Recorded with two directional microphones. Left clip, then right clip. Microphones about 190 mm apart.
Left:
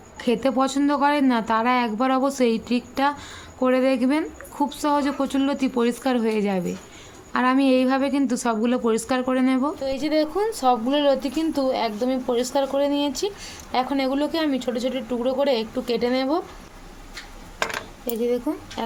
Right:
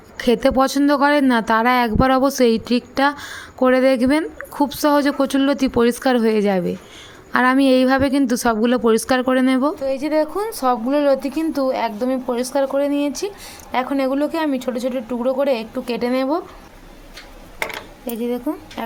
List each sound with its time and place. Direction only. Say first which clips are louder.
0.2 s a woman's voice: right 6 dB; 35° right (ahead or behind)
9.8 s speech: right 4 dB; 25° right (ahead or behind)